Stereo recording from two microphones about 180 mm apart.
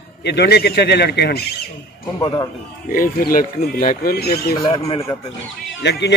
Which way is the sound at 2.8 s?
50° left (ahead or behind).